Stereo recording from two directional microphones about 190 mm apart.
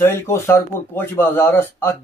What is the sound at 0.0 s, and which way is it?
Speech, 15° left (ahead or behind).